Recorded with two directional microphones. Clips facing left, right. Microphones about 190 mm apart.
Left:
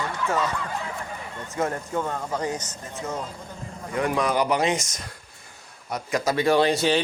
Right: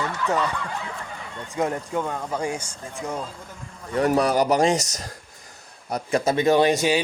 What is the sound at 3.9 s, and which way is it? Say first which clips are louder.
Speech: right 4 dB; 40° right (ahead or behind).